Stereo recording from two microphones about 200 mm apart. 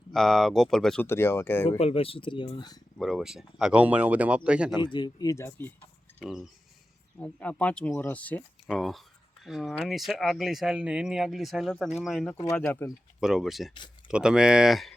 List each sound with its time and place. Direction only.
0.1 s speech: centre (ahead or behind)
1.8 s speech: 30° left (ahead or behind)
3.0 s speech: centre (ahead or behind)
4.8 s speech: 20° left (ahead or behind)
6.1 s speech: centre (ahead or behind)
12.4 s speech: 15° left (ahead or behind)
13.1 s speech: centre (ahead or behind)